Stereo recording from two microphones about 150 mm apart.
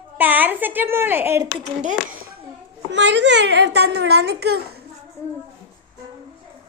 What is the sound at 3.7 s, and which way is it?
Speech, 90° right.